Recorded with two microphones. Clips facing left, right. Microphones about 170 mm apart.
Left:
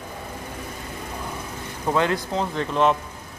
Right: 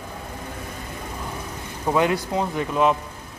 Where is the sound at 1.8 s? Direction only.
15° right (ahead or behind).